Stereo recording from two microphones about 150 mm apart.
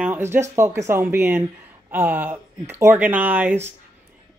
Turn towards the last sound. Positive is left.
turn(degrees=-15)  # may be behind; listen again after turning